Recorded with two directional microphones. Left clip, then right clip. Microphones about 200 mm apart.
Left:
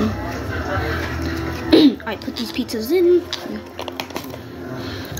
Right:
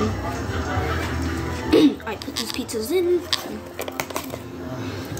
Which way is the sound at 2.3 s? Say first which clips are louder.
Left 2 dB; 10° left (ahead or behind).